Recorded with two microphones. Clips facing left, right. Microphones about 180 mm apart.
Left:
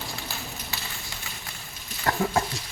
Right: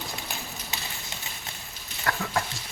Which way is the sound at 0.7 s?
20° right (ahead or behind).